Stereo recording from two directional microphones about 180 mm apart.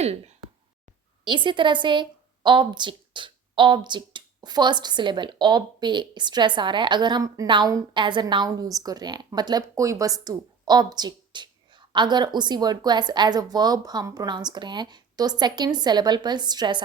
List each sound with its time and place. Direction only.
1.2 s a woman's voice: 25° right (ahead or behind)